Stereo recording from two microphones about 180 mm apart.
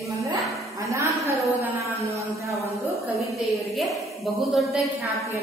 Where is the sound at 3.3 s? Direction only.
Centre (ahead or behind).